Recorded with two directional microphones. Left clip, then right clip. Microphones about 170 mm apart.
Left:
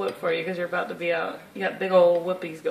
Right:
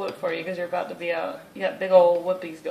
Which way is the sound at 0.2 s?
50° left (ahead or behind).